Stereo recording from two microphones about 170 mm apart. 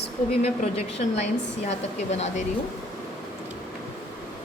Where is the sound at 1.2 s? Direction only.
40° left (ahead or behind).